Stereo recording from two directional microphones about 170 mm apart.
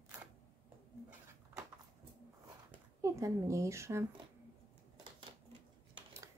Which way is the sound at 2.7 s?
15° right (ahead or behind).